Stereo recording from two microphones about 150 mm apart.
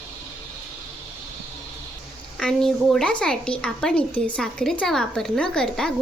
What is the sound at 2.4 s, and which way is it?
A woman's voice, centre (ahead or behind).